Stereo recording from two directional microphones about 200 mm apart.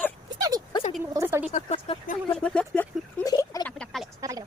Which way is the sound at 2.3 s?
5° left (ahead or behind).